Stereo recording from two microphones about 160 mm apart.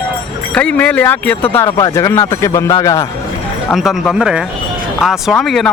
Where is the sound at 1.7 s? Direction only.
25° left (ahead or behind).